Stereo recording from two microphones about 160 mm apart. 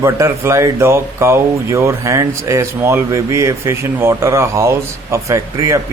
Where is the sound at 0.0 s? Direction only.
20° right (ahead or behind).